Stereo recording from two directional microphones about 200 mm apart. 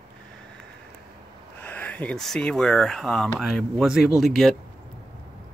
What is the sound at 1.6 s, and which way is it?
Speech, 10° left (ahead or behind).